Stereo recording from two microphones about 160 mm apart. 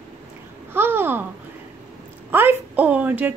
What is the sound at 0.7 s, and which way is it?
Babbling, 15° right (ahead or behind).